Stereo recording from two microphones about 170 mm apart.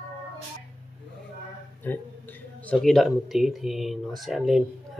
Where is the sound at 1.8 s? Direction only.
10° left (ahead or behind).